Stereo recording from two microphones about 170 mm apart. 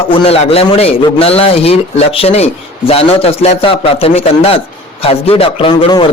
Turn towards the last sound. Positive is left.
turn(degrees=30)  # may be behind; listen again after turning